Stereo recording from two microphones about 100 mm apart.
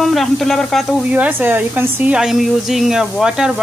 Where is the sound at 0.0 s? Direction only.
Centre (ahead or behind).